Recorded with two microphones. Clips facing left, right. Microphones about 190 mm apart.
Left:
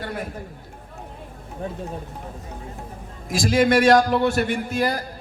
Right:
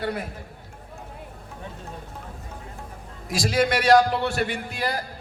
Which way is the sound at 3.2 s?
50° left (ahead or behind).